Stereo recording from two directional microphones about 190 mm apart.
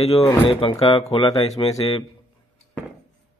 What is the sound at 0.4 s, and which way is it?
Speech, 30° left (ahead or behind).